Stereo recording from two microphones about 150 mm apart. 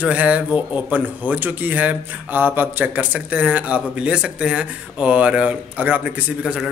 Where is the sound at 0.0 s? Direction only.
10° right (ahead or behind).